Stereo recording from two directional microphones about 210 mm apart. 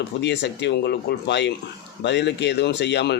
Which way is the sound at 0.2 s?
55° left (ahead or behind).